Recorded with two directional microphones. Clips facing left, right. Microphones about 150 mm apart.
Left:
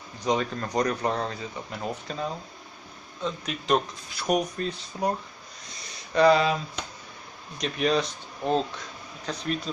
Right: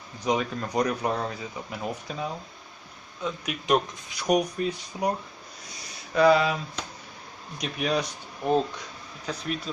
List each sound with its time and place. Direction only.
0.2 s speech: 5° right (ahead or behind)
6.1 s speech: 5° right (ahead or behind)